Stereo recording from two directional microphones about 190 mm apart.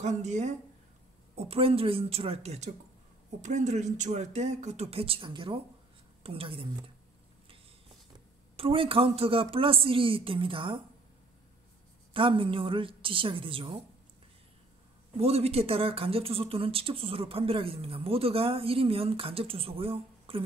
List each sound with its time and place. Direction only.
0.0 s speech: 40° right (ahead or behind)
8.5 s speech: 30° right (ahead or behind)
12.1 s speech: 25° right (ahead or behind)
15.1 s speech: 30° right (ahead or behind)